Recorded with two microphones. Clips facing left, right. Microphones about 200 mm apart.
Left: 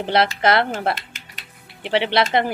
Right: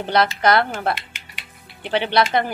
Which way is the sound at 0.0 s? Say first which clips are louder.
Even; 30° left (ahead or behind).